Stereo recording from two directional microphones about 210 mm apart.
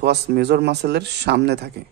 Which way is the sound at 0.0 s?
50° right (ahead or behind).